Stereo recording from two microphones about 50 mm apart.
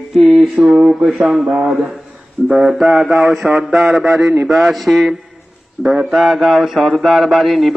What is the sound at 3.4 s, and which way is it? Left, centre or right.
Mantra, centre.